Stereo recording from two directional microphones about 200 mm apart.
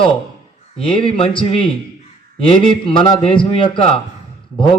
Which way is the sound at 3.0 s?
25° left (ahead or behind).